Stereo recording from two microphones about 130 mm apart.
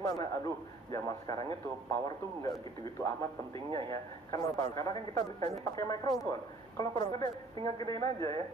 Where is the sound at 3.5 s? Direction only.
45° right (ahead or behind).